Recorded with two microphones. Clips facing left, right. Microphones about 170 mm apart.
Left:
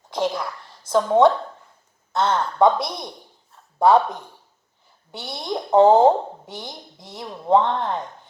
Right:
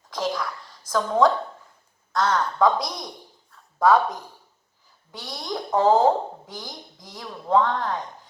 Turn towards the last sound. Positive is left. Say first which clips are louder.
# left 3 dB
turn(degrees=25)  # may be behind; listen again after turning